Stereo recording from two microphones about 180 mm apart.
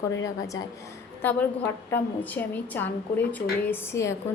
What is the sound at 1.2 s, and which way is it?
A woman's voice, 10° left (ahead or behind).